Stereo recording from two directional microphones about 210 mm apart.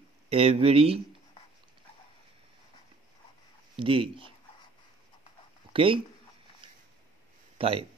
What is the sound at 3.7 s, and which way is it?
Speech, 25° right (ahead or behind).